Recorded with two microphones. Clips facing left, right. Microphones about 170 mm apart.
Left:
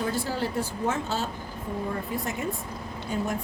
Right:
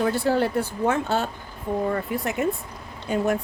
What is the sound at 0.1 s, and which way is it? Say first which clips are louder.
Speech: right 7 dB; 60° right (ahead or behind).